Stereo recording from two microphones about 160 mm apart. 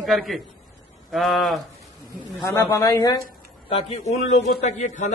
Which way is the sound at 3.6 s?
35° left (ahead or behind).